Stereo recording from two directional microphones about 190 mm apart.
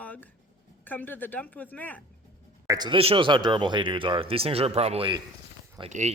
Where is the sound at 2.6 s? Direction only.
20° right (ahead or behind).